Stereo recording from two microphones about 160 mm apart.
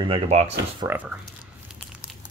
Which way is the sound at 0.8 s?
20° right (ahead or behind).